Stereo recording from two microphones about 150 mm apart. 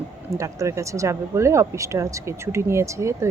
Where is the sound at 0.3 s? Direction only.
20° right (ahead or behind).